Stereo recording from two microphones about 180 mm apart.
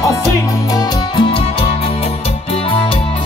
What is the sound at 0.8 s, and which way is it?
Music, 25° left (ahead or behind).